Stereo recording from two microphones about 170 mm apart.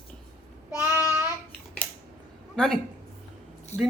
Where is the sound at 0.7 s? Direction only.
10° right (ahead or behind).